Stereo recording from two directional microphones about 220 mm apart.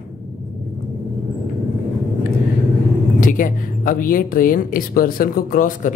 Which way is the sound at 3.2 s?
35° left (ahead or behind).